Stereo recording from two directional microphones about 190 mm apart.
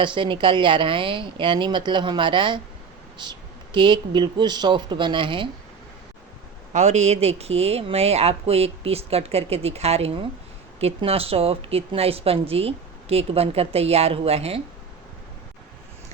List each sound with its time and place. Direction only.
0.0 s a woman's voice: 25° right (ahead or behind)
6.7 s a woman's voice: 35° right (ahead or behind)